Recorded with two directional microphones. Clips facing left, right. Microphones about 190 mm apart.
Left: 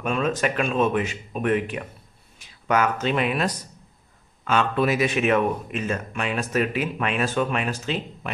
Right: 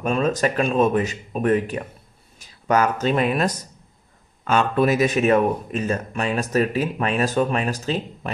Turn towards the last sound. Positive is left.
turn(degrees=-40)  # may be behind; listen again after turning